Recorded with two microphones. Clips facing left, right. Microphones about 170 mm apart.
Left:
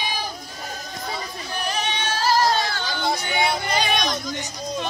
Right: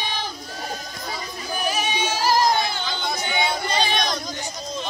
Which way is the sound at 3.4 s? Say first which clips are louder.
Even; 30° right (ahead or behind).